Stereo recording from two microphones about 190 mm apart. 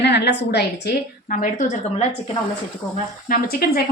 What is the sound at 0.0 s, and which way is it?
Speech, 60° left (ahead or behind).